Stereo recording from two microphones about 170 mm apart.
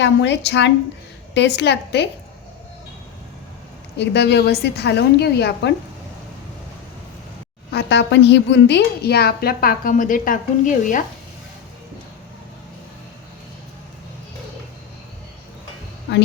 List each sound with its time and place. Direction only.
0.0 s a woman's voice: 90° left
3.9 s a woman's voice: 80° left
7.7 s a woman's voice: 80° left; by 11.0 s 50° left (ahead or behind)